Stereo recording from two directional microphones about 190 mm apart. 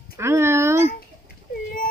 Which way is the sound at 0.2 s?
15° right (ahead or behind).